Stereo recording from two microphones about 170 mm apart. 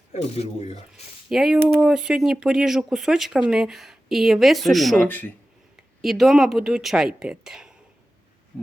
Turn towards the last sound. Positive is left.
turn(degrees=-5)  # may be behind; listen again after turning